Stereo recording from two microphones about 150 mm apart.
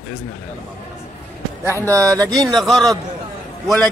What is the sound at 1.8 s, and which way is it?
Speech, 20° right (ahead or behind).